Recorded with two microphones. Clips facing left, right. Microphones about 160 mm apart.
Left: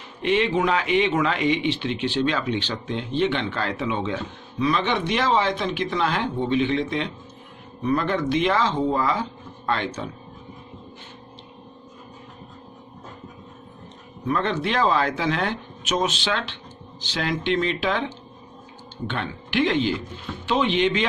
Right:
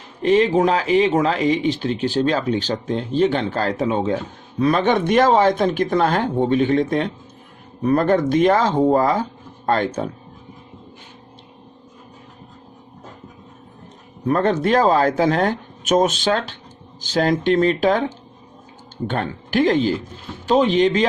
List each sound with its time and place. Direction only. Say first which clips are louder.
0.2 s speech: right 6 dB; 40° right (ahead or behind)
14.3 s speech: right 7 dB; 45° right (ahead or behind)